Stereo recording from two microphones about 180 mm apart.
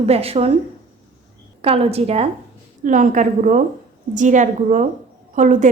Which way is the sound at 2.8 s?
45° right (ahead or behind).